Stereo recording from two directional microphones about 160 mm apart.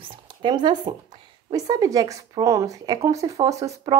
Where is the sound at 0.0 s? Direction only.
30° right (ahead or behind).